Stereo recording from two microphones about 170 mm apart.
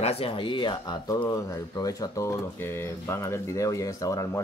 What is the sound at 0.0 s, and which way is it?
Speech, 35° left (ahead or behind).